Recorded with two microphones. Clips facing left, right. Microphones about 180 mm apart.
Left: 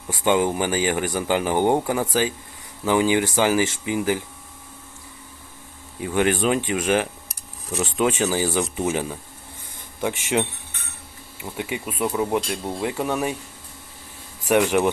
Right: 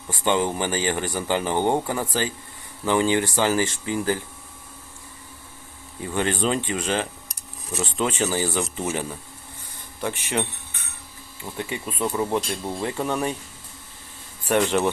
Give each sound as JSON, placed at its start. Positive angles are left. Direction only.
{"t": 0.1, "sound": "speech", "side_deg": 10}
{"t": 6.0, "sound": "speech", "side_deg": 10}
{"t": 11.5, "sound": "speech", "side_deg": 10}
{"t": 14.4, "sound": "speech", "side_deg": 10}